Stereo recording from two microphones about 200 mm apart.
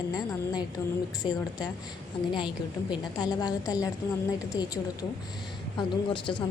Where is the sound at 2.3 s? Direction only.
25° left (ahead or behind).